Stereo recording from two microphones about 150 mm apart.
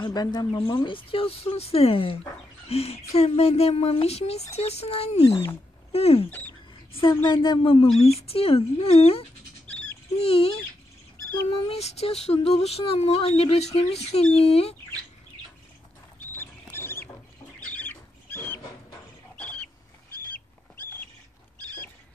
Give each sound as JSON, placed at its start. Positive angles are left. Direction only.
{"t": 0.0, "sound": "speech", "side_deg": 25}
{"t": 5.3, "sound": "speech", "side_deg": 20}
{"t": 5.9, "sound": "a woman's voice", "side_deg": 40}
{"t": 16.3, "sound": "rodents", "side_deg": 15}
{"t": 19.3, "sound": "a sound", "side_deg": 10}